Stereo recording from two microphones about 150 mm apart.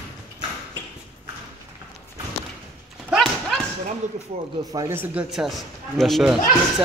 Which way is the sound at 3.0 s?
Centre (ahead or behind).